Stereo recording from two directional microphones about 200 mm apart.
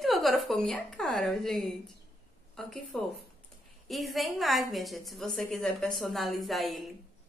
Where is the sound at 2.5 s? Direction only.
Centre (ahead or behind).